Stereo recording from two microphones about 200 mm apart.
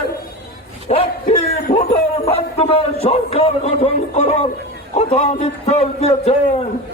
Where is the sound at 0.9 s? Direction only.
30° left (ahead or behind).